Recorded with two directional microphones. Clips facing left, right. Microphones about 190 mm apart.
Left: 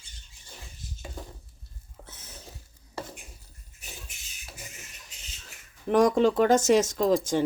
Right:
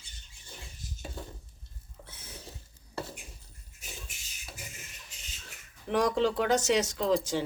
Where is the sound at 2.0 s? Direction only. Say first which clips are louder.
Left 2 dB; 45° left (ahead or behind).